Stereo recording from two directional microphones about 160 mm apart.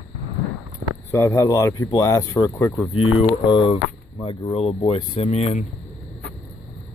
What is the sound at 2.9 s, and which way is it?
Speech, 35° left (ahead or behind).